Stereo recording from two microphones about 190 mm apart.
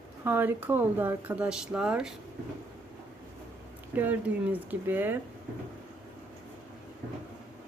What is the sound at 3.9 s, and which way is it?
Speech, 10° right (ahead or behind).